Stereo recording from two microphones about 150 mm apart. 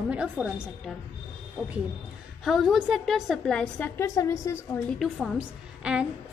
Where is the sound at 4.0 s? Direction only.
20° left (ahead or behind).